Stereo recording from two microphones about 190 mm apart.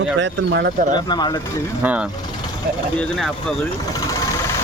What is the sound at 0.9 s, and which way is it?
Speech, 20° left (ahead or behind).